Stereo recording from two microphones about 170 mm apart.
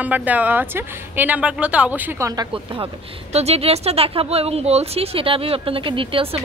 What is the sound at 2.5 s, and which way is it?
Speech, 35° right (ahead or behind).